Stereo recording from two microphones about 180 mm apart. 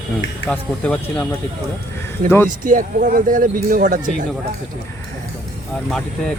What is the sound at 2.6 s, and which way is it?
Speech, 50° right (ahead or behind).